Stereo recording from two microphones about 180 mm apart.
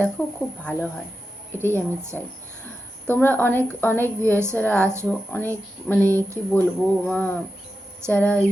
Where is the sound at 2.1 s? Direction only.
5° left (ahead or behind).